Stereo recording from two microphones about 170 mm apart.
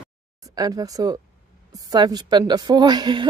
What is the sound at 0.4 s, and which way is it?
A man's voice, 20° right (ahead or behind).